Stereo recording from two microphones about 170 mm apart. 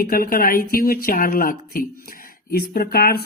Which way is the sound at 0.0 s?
60° left (ahead or behind).